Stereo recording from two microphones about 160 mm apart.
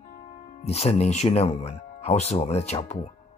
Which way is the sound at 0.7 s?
40° left (ahead or behind).